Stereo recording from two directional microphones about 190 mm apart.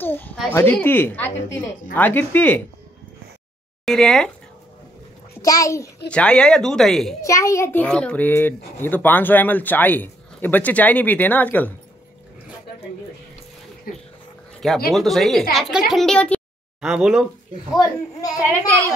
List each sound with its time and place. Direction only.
0.0 s a child's voice: 10° left (ahead or behind)
3.8 s speech: centre (ahead or behind)
5.4 s a child's voice: 15° left (ahead or behind)
6.0 s speech: 5° left (ahead or behind)
7.2 s a child's voice: 15° left (ahead or behind)
13.9 s dog: 50° left (ahead or behind)
14.9 s speech: centre (ahead or behind)
18.2 s speech: 20° left (ahead or behind)